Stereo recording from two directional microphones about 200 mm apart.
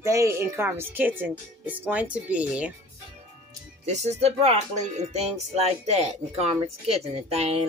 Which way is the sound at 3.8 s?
35° right (ahead or behind).